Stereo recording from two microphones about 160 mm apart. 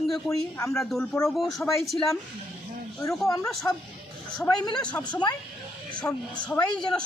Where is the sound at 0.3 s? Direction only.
20° left (ahead or behind).